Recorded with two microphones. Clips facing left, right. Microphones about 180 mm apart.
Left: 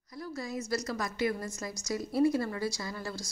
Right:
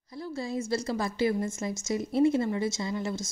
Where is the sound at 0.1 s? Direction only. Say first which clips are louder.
Right 4 dB; 25° right (ahead or behind).